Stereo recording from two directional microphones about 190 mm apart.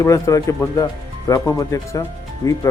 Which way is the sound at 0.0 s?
15° left (ahead or behind).